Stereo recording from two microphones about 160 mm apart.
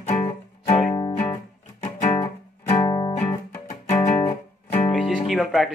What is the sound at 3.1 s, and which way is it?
Music, 40° left (ahead or behind).